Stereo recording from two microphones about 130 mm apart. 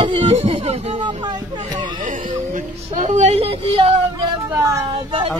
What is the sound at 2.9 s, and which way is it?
Speech, 65° right (ahead or behind).